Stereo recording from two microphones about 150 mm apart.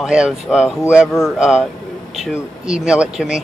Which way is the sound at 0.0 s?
5° right (ahead or behind).